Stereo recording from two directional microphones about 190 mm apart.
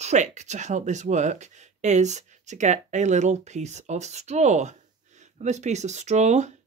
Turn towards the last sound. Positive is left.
turn(degrees=-35)  # may be behind; listen again after turning